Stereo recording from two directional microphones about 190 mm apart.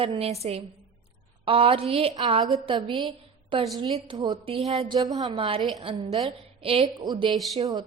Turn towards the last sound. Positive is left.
turn(degrees=-20)  # may be behind; listen again after turning